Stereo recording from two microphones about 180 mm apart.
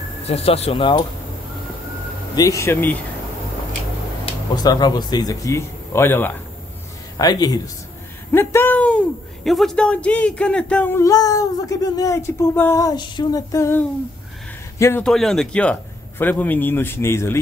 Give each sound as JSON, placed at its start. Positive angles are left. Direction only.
{"t": 0.3, "sound": "speech", "side_deg": 35}
{"t": 2.3, "sound": "speech", "side_deg": 20}
{"t": 4.3, "sound": "speech", "side_deg": 25}